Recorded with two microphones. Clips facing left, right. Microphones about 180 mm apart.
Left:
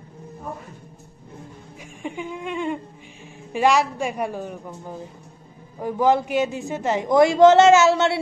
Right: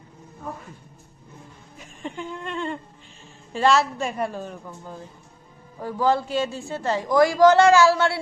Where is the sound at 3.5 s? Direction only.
15° left (ahead or behind).